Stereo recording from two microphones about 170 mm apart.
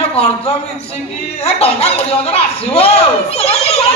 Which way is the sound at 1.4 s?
35° left (ahead or behind).